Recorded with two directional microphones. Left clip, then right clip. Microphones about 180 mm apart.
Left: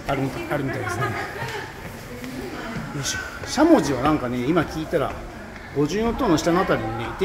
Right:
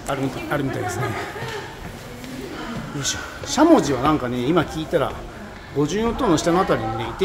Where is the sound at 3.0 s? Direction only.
5° right (ahead or behind).